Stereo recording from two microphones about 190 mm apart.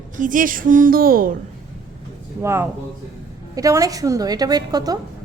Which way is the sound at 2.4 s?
15° right (ahead or behind).